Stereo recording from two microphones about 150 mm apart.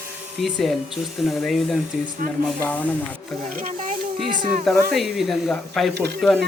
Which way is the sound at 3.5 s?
60° right (ahead or behind).